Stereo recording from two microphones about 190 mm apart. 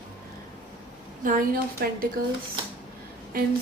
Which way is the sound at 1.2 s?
45° right (ahead or behind).